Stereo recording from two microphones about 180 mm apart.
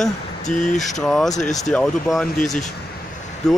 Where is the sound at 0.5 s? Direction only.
45° left (ahead or behind).